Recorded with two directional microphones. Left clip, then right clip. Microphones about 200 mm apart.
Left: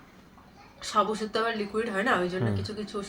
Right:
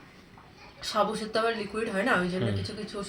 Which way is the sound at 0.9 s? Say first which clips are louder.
Left 1 dB; 10° left (ahead or behind).